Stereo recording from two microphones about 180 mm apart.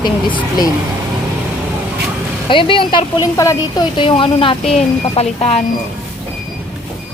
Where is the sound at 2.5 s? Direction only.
30° left (ahead or behind).